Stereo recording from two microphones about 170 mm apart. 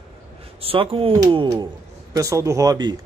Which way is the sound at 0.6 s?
35° right (ahead or behind).